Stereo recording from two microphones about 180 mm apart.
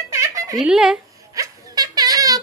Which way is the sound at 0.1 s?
15° right (ahead or behind).